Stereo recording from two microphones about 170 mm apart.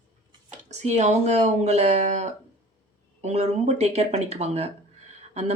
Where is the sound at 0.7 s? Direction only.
40° right (ahead or behind).